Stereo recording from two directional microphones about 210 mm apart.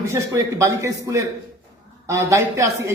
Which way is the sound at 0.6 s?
15° right (ahead or behind).